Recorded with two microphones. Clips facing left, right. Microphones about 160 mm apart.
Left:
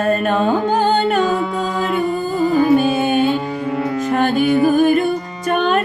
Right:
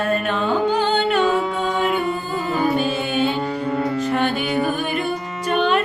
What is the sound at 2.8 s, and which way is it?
Music, 45° left (ahead or behind).